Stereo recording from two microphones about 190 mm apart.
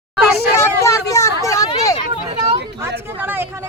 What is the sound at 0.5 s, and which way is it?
Hubbub, 15° left (ahead or behind).